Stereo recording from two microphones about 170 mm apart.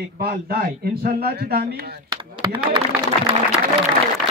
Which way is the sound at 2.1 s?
30° right (ahead or behind).